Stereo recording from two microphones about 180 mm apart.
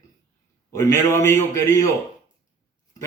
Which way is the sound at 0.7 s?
15° left (ahead or behind).